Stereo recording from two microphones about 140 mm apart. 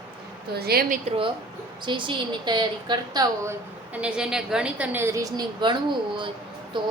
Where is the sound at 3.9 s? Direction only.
5° right (ahead or behind); by 5.7 s 30° right (ahead or behind).